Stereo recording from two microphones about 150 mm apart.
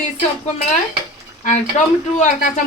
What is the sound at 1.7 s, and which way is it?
Speech, 50° left (ahead or behind).